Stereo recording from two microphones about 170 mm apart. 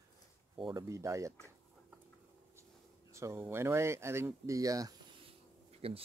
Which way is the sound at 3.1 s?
15° right (ahead or behind).